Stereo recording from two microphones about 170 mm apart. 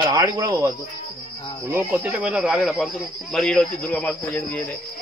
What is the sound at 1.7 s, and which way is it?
Speech, 10° right (ahead or behind).